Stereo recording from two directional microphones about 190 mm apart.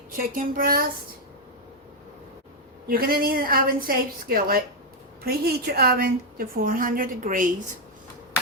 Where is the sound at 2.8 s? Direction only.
50° right (ahead or behind).